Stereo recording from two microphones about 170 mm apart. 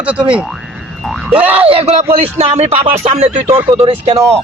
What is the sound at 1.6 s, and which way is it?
A man's voice, 35° right (ahead or behind).